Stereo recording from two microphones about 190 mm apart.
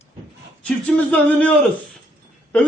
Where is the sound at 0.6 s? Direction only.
5° left (ahead or behind).